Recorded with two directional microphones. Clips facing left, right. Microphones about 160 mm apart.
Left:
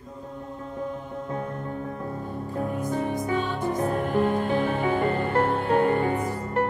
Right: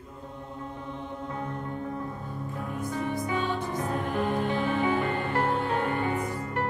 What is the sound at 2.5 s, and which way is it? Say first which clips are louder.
Music: left 6 dB; 40° left (ahead or behind).